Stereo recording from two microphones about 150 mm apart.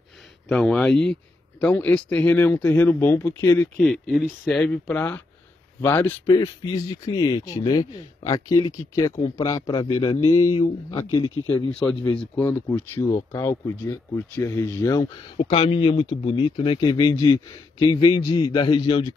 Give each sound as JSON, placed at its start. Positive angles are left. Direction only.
{"t": 0.5, "sound": "speech", "side_deg": 5}
{"t": 3.8, "sound": "a man's voice", "side_deg": 0}
{"t": 11.1, "sound": "speech", "side_deg": 30}
{"t": 12.2, "sound": "speech", "side_deg": 15}
{"t": 15.3, "sound": "a man's voice", "side_deg": 35}